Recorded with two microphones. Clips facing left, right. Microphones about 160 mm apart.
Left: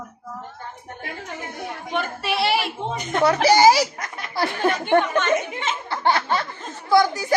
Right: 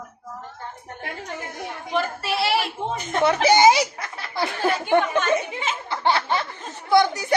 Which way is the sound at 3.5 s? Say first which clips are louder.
Left 1 dB; 20° right (ahead or behind).